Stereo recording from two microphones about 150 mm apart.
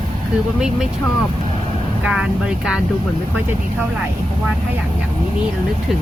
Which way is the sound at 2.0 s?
5° right (ahead or behind).